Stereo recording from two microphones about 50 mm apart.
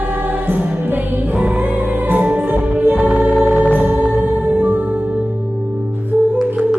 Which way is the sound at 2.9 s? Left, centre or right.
Right.